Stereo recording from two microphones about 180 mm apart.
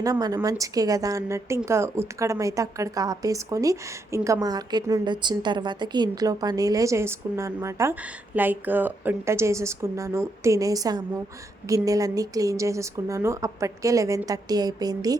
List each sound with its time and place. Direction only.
0.0 s a woman's voice: 20° right (ahead or behind)